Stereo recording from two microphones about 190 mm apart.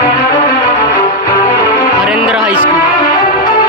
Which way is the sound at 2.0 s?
5° right (ahead or behind).